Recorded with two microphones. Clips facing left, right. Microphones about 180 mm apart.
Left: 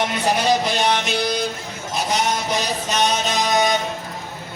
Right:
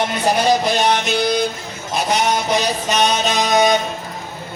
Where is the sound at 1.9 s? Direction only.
65° right (ahead or behind).